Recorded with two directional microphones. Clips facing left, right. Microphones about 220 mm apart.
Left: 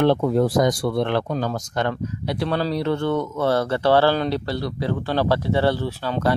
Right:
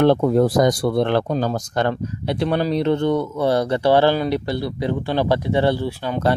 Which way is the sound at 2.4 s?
20° right (ahead or behind).